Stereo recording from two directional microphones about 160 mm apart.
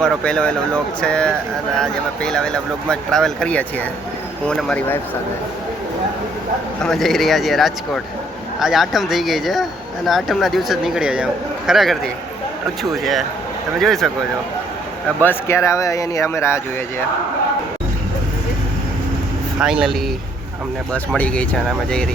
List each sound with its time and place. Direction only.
0.0 s speech: 5° left (ahead or behind)
6.8 s speech: centre (ahead or behind)
15.2 s speech: 15° left (ahead or behind)
19.5 s speech: 5° right (ahead or behind)
20.9 s speech: 10° left (ahead or behind)